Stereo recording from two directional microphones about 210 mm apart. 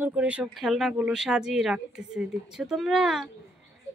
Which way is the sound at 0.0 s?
5° right (ahead or behind).